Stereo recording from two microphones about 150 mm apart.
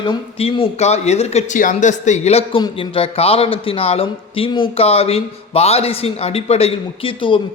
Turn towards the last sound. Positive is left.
turn(degrees=35)  # may be behind; listen again after turning